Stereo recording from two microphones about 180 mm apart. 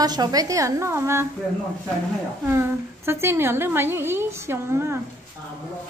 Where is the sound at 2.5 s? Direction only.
15° right (ahead or behind).